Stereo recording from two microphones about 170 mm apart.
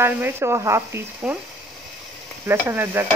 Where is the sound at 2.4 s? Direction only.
15° right (ahead or behind).